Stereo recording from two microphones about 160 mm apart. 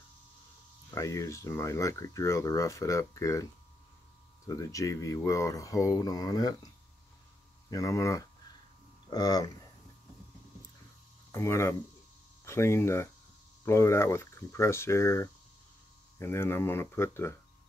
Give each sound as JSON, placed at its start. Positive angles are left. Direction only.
{"t": 0.8, "sound": "speech", "side_deg": 20}
{"t": 4.5, "sound": "speech", "side_deg": 20}
{"t": 7.7, "sound": "speech", "side_deg": 20}
{"t": 11.3, "sound": "speech", "side_deg": 15}